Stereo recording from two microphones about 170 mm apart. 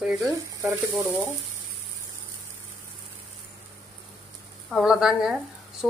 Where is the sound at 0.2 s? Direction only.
20° right (ahead or behind).